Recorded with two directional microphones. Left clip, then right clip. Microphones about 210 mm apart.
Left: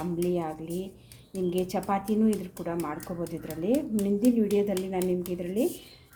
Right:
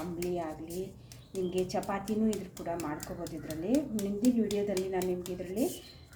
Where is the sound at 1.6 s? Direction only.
50° left (ahead or behind).